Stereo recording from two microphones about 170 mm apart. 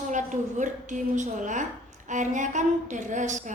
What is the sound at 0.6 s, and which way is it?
A woman's voice, 45° right (ahead or behind).